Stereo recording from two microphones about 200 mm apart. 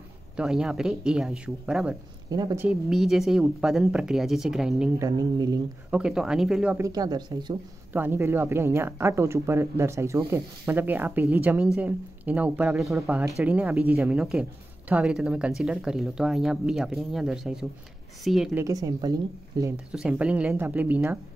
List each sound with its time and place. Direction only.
0.4 s speech: 5° right (ahead or behind)
2.3 s speech: 15° right (ahead or behind)
4.9 s speech: 15° right (ahead or behind)
5.9 s speech: 5° right (ahead or behind)
6.9 s speech: 20° right (ahead or behind)
7.9 s speech: 10° right (ahead or behind)
18.5 s speech: 15° right (ahead or behind)
19.9 s speech: 5° right (ahead or behind)